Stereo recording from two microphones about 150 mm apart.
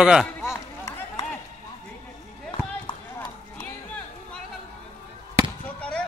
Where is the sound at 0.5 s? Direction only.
20° left (ahead or behind).